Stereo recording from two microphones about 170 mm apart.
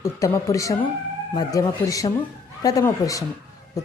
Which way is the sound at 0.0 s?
15° left (ahead or behind).